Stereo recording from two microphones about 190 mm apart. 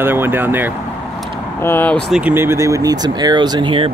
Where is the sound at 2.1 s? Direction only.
10° right (ahead or behind); by 3.9 s 25° right (ahead or behind).